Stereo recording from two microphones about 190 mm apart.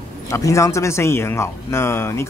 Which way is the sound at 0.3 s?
15° left (ahead or behind).